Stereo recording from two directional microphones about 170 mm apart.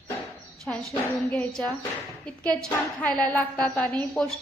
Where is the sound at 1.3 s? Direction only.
5° left (ahead or behind).